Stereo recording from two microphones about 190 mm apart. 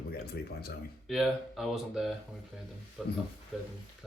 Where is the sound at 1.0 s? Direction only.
Centre (ahead or behind).